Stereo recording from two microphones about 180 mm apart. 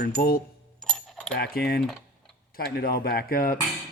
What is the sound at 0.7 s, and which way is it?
Coin, 5° left (ahead or behind).